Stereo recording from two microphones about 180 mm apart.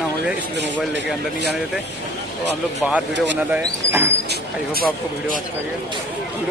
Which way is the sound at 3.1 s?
80° right.